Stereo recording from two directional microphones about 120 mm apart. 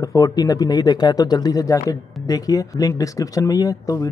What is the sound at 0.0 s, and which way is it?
Speech, 30° left (ahead or behind).